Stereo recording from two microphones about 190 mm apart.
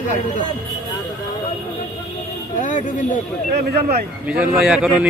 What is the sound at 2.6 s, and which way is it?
Speech, 40° left (ahead or behind).